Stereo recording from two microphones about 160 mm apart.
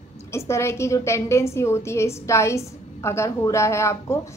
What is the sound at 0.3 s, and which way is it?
A woman's voice, 15° left (ahead or behind).